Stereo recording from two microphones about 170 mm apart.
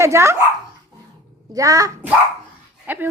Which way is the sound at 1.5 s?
20° right (ahead or behind).